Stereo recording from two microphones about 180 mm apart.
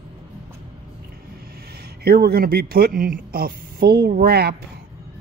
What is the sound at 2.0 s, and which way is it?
Speech, 60° right (ahead or behind).